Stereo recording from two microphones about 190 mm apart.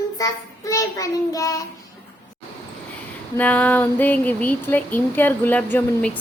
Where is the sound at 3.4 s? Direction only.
10° left (ahead or behind).